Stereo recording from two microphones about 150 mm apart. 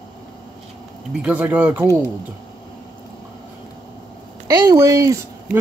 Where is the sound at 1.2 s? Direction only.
10° right (ahead or behind).